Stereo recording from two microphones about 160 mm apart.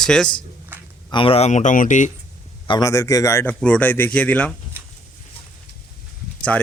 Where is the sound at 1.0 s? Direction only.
35° left (ahead or behind); by 2.1 s 55° left (ahead or behind).